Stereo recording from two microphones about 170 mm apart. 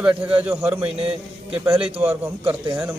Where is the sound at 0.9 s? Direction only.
35° right (ahead or behind).